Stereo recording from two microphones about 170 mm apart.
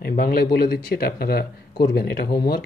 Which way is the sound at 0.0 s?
60° left (ahead or behind).